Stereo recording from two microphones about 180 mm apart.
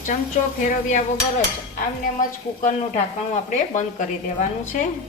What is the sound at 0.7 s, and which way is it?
Stir, 45° left (ahead or behind).